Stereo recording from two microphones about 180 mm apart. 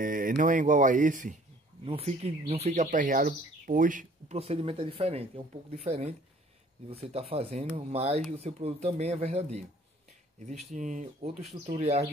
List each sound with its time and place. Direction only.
0.0 s speech: 50° right (ahead or behind)
1.9 s speech: 35° right (ahead or behind)